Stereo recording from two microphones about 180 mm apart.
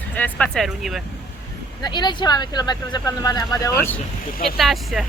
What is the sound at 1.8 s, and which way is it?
Speech, 25° left (ahead or behind).